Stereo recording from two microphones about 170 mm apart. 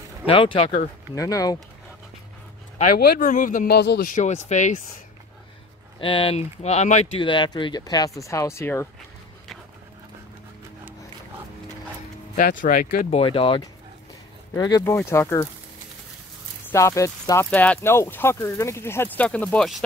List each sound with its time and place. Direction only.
0.3 s speech: 30° left (ahead or behind)
1.1 s speech: 20° left (ahead or behind)
2.8 s a man's voice: 60° left (ahead or behind)
4.1 s speech: 45° left (ahead or behind)
5.9 s speech: 30° left (ahead or behind)
12.4 s speech: 55° left (ahead or behind)
13.1 s speech: 30° left (ahead or behind)
14.8 s speech: 15° left (ahead or behind)
16.7 s speech: 20° left (ahead or behind)